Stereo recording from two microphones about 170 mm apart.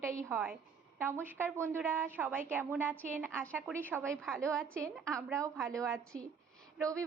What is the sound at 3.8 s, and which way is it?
Speech, 15° right (ahead or behind).